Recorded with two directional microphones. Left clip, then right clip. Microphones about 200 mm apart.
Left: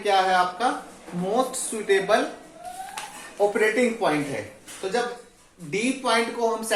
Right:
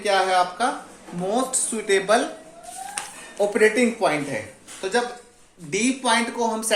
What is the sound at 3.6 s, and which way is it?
Speech, 50° right (ahead or behind).